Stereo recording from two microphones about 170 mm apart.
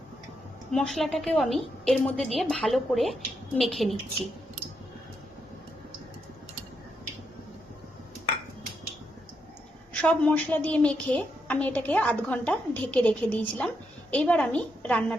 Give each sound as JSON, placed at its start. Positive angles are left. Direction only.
{"t": 0.7, "sound": "a woman's voice", "side_deg": 0}
{"t": 10.0, "sound": "a woman's voice", "side_deg": 5}